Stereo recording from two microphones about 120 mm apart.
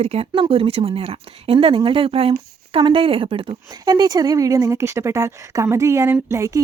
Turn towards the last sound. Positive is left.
turn(degrees=-25)  # may be behind; listen again after turning